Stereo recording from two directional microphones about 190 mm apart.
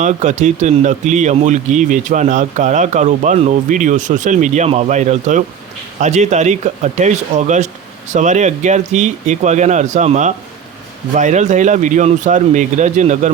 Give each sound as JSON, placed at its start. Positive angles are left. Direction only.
{"t": 0.0, "sound": "speech", "side_deg": -40}